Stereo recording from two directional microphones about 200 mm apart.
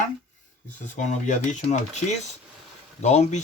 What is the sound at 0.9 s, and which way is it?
Speech, 40° left (ahead or behind).